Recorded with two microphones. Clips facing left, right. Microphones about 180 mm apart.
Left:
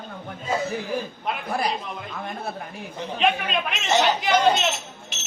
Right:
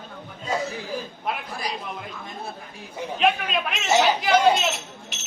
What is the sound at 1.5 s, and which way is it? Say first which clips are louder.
Speech: left 7 dB; 60° left (ahead or behind).